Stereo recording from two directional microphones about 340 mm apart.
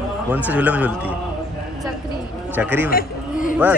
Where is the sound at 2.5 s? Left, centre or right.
Centre.